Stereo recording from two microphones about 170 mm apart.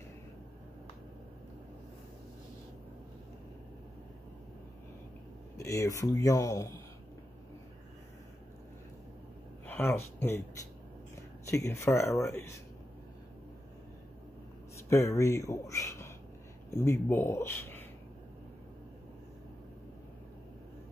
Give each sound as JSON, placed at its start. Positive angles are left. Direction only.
{"t": 5.6, "sound": "speech", "side_deg": 20}
{"t": 9.7, "sound": "speech", "side_deg": 15}
{"t": 14.9, "sound": "speech", "side_deg": 15}